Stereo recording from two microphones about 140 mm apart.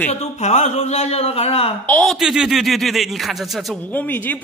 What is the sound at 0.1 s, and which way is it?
Speech, 50° left (ahead or behind).